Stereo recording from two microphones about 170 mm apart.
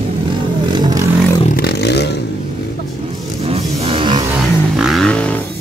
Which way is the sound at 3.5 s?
35° right (ahead or behind).